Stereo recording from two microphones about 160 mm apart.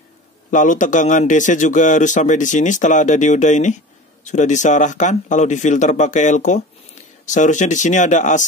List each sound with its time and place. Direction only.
0.5 s a man's voice: 50° left (ahead or behind)